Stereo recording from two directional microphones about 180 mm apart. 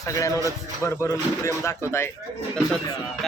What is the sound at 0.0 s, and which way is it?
Speech, 20° left (ahead or behind).